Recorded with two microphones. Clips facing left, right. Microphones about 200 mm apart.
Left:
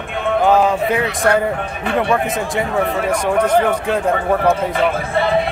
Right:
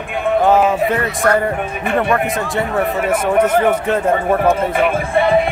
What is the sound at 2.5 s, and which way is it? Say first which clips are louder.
Speech: even; centre (ahead or behind).